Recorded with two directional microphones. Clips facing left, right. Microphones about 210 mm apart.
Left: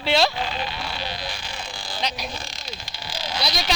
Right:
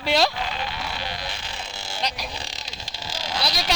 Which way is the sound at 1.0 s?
25° left (ahead or behind).